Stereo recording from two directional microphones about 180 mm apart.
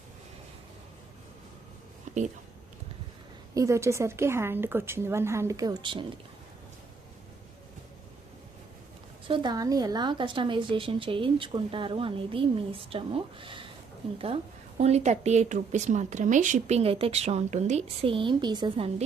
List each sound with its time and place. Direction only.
2.1 s a sound: 40° right (ahead or behind)
3.5 s speech: 15° right (ahead or behind)
9.2 s speech: 25° right (ahead or behind)
14.8 s speech: 35° right (ahead or behind)